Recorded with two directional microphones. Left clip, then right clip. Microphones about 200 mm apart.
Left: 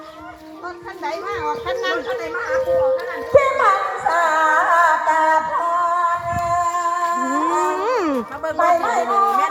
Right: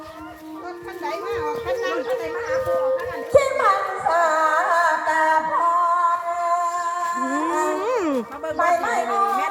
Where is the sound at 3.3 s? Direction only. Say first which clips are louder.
Left 3 dB; 10° right (ahead or behind).